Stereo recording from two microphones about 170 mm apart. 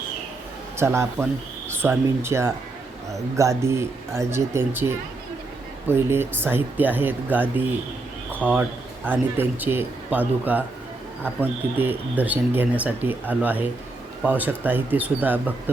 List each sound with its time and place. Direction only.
0.8 s speech: 15° right (ahead or behind)